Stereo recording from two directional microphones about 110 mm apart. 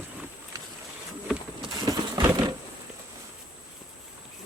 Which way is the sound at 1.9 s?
35° right (ahead or behind).